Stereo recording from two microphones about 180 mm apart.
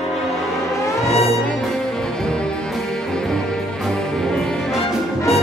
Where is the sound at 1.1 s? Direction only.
35° left (ahead or behind).